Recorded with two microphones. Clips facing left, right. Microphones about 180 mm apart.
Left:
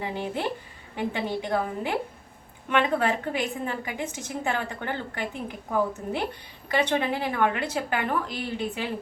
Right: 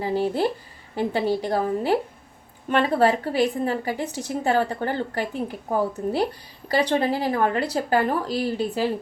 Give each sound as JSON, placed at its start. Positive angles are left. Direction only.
{"t": 0.0, "sound": "a woman's voice", "side_deg": -35}